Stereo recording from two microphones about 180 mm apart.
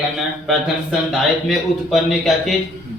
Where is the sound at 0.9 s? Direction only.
Centre (ahead or behind).